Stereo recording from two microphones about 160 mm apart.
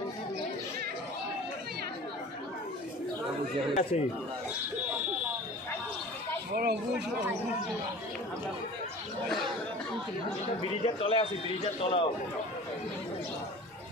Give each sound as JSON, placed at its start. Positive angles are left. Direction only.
{"t": 3.9, "sound": "speech", "side_deg": 45}
{"t": 6.5, "sound": "speech", "side_deg": -75}
{"t": 10.6, "sound": "a man's voice", "side_deg": 35}